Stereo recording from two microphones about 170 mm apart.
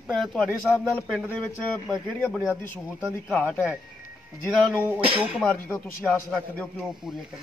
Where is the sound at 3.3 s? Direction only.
10° left (ahead or behind).